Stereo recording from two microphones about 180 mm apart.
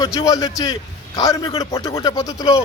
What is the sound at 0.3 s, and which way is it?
A man's voice, 20° left (ahead or behind).